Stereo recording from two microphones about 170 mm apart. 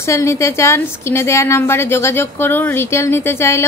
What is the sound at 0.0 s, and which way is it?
A woman's voice, 15° left (ahead or behind).